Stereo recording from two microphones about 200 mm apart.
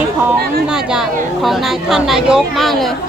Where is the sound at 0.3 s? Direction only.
5° right (ahead or behind).